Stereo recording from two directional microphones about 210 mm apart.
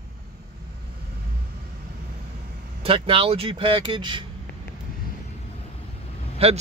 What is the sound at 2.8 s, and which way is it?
Speech, 25° right (ahead or behind).